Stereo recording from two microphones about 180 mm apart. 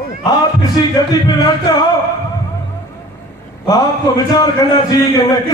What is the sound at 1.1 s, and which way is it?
Speech, 20° left (ahead or behind).